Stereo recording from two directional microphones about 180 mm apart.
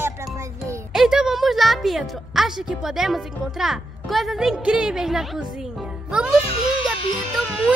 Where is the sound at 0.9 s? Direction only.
5° right (ahead or behind).